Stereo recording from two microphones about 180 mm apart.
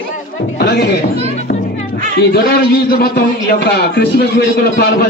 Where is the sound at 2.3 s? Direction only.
65° left (ahead or behind).